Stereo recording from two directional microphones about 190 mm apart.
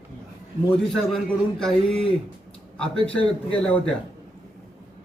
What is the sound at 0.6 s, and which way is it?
Speech, centre (ahead or behind).